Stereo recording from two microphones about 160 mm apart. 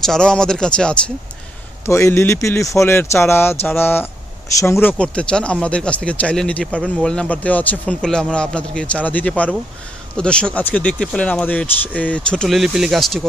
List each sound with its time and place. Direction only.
0.0 s speech: 5° left (ahead or behind)
1.9 s speech: 20° left (ahead or behind); by 13.2 s centre (ahead or behind)